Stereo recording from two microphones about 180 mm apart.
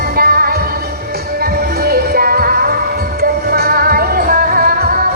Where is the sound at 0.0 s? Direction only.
55° right (ahead or behind).